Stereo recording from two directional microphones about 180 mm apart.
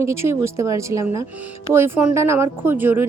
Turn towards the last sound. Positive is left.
turn(degrees=-10)  # may be behind; listen again after turning